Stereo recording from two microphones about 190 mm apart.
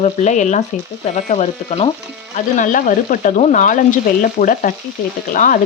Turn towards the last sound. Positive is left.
turn(degrees=45)  # may be behind; listen again after turning